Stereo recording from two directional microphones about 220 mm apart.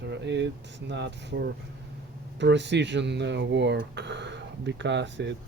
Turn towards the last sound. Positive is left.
turn(degrees=-55)  # may be behind; listen again after turning